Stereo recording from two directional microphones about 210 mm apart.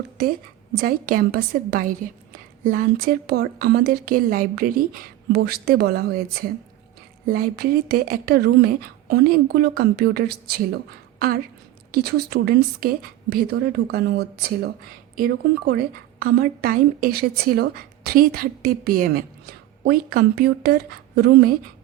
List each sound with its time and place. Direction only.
0.8 s a woman's voice: 40° right (ahead or behind)
7.3 s a woman's voice: 45° right (ahead or behind)
11.9 s a woman's voice: 50° right (ahead or behind)